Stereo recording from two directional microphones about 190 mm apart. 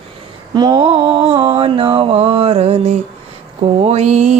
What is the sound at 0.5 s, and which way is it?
Mantra, 25° right (ahead or behind).